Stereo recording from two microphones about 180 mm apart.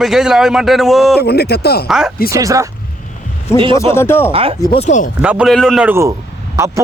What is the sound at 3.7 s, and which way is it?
Speech, 15° left (ahead or behind).